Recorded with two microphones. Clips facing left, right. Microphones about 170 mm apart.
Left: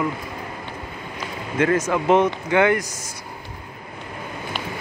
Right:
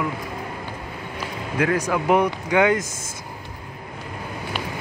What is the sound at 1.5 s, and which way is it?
Speech, 10° right (ahead or behind).